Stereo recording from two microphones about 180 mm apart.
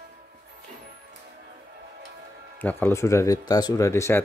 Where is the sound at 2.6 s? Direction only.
10° left (ahead or behind).